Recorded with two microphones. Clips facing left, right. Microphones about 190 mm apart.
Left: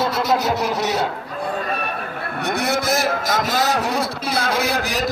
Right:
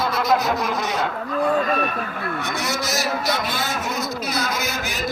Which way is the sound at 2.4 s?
60° left (ahead or behind).